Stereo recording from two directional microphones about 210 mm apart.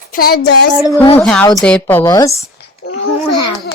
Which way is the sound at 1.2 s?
5° left (ahead or behind).